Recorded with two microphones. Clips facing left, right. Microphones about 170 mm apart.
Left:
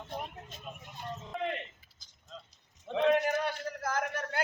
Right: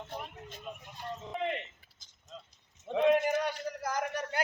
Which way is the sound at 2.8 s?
10° right (ahead or behind).